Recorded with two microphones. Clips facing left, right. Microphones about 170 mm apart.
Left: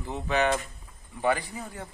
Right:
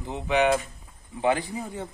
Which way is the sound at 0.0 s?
15° right (ahead or behind).